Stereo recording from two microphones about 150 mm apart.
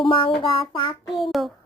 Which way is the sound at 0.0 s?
35° left (ahead or behind).